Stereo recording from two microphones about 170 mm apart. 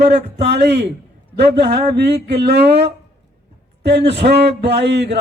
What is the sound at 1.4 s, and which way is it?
Speech, 80° right.